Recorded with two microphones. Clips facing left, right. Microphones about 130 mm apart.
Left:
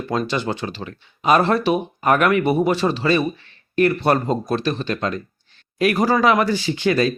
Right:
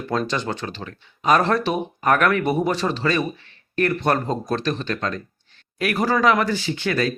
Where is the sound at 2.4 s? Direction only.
5° left (ahead or behind).